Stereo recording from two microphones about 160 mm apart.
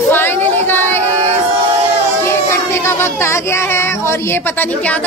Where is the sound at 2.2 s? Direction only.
15° left (ahead or behind).